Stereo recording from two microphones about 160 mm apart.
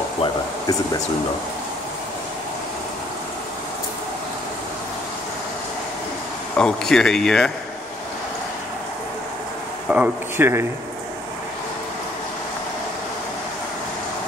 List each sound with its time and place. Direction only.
0.2 s air conditioning: 25° left (ahead or behind)
6.5 s speech: 5° left (ahead or behind)
9.8 s speech: 10° right (ahead or behind)